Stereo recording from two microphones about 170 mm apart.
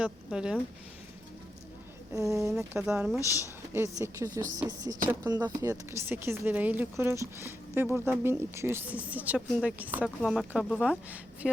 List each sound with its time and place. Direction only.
0.0 s speech: 5° right (ahead or behind)
2.1 s speech: 20° right (ahead or behind)
2.5 s speech: 5° right (ahead or behind)
3.2 s speech: 20° left (ahead or behind)
3.8 s speech: 15° right (ahead or behind)
10.2 s speech: centre (ahead or behind)